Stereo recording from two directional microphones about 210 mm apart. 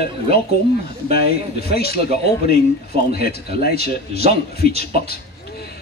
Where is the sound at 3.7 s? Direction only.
30° right (ahead or behind).